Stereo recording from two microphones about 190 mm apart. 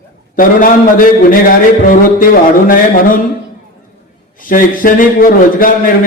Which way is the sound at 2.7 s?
45° left (ahead or behind).